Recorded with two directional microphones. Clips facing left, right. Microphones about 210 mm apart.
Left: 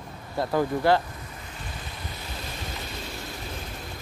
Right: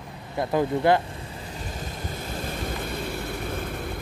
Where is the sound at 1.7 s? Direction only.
45° right (ahead or behind).